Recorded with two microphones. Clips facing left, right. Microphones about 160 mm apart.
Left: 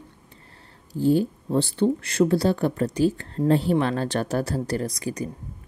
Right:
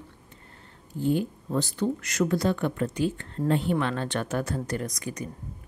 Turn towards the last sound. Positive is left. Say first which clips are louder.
# left 5 dB
turn(degrees=30)  # may be behind; listen again after turning